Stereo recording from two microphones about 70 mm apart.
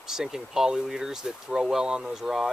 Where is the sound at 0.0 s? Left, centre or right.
Centre.